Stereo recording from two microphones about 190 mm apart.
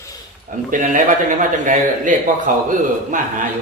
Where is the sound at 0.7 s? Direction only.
45° right (ahead or behind).